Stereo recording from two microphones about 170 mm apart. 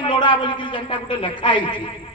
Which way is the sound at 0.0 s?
30° left (ahead or behind).